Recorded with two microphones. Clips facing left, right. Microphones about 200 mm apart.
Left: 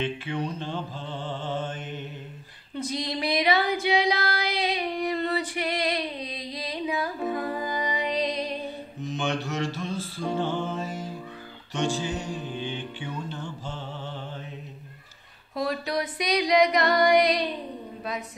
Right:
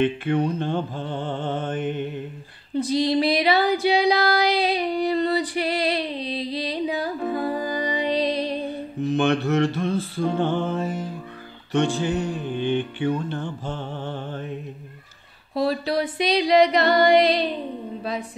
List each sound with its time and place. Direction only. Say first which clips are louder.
0.0 s mantra: right 8 dB; 55° right (ahead or behind)
2.7 s female singing: right 10 dB; 30° right (ahead or behind)
9.0 s mantra: right 9 dB; 60° right (ahead or behind)
11.7 s music: right 6 dB; 60° right (ahead or behind)
15.5 s music: right 5 dB; 30° right (ahead or behind)